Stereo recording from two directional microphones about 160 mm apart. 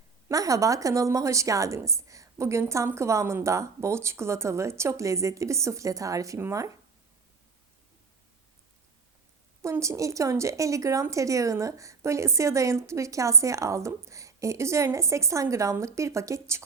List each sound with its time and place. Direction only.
0.3 s a woman's voice: 20° right (ahead or behind)
9.6 s a woman's voice: 20° right (ahead or behind)